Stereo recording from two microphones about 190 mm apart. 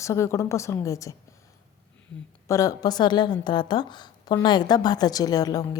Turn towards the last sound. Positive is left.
turn(degrees=20)  # may be behind; listen again after turning